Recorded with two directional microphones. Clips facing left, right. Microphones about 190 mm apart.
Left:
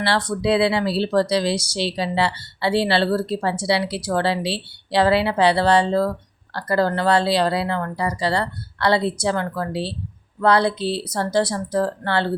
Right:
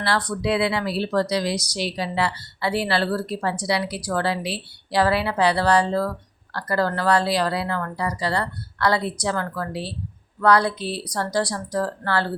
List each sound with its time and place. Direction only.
0.0 s speech: 25° left (ahead or behind)